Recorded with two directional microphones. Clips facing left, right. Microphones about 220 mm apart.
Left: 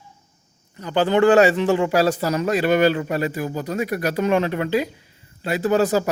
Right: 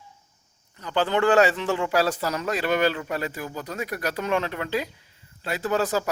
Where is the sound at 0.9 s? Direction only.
15° left (ahead or behind).